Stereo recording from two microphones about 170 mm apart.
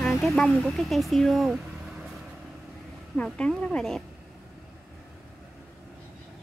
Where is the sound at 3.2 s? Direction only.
5° left (ahead or behind).